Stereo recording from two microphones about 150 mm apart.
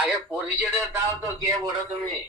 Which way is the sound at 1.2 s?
25° right (ahead or behind).